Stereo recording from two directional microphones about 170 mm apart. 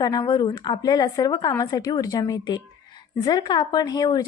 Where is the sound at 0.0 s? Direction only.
20° left (ahead or behind).